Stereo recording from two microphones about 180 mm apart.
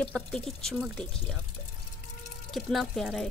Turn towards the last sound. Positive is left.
turn(degrees=0)  # may be behind; listen again after turning